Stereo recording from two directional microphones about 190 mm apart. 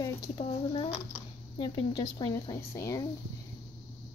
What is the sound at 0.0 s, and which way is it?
Speech, 20° left (ahead or behind).